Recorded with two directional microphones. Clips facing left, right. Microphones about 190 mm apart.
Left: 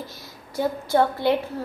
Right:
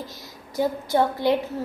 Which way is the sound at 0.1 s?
15° right (ahead or behind).